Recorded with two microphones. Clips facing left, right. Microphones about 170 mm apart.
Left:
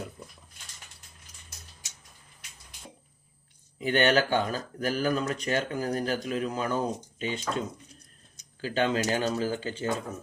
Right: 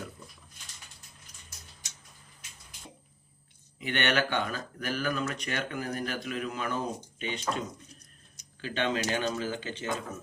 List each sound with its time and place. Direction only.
3.8 s speech: 35° left (ahead or behind)
8.6 s speech: 35° left (ahead or behind)